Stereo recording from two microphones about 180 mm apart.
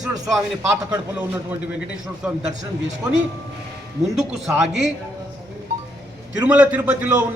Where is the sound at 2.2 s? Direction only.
5° right (ahead or behind).